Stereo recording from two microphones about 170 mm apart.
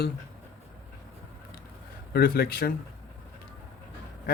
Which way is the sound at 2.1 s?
65° left (ahead or behind).